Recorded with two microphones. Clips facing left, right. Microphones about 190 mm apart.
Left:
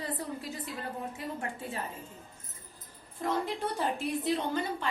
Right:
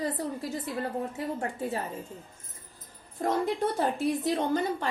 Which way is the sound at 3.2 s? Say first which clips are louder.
Right 5 dB; 45° right (ahead or behind).